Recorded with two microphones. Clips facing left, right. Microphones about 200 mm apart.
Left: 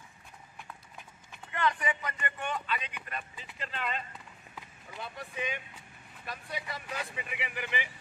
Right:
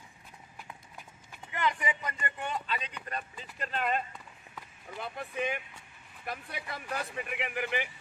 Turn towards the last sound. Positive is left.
turn(degrees=-50)  # may be behind; listen again after turning